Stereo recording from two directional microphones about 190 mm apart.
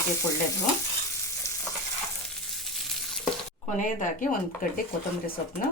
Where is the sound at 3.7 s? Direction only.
45° left (ahead or behind).